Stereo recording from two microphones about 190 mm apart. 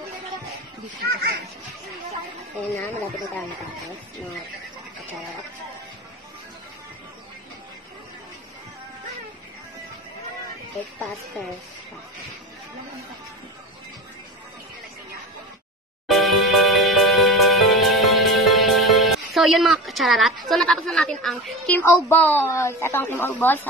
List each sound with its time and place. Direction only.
1.0 s speech: 55° right (ahead or behind)
16.1 s music: centre (ahead or behind)
20.4 s a woman's voice: centre (ahead or behind)